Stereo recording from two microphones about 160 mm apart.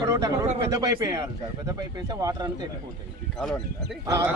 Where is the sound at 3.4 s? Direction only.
5° left (ahead or behind).